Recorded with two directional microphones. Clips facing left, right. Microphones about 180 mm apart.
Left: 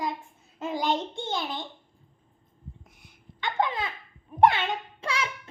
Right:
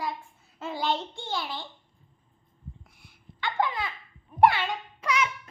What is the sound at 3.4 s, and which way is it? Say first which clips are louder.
A child's voice: left 1 dB; 20° left (ahead or behind).